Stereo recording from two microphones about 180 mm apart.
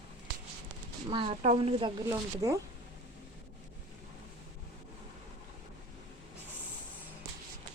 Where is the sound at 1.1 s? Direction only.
30° right (ahead or behind).